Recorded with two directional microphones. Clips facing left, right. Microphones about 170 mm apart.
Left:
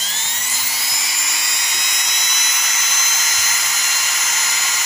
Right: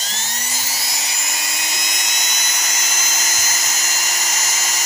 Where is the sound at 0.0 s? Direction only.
40° right (ahead or behind).